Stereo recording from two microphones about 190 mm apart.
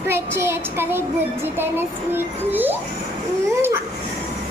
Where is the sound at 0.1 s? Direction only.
10° right (ahead or behind).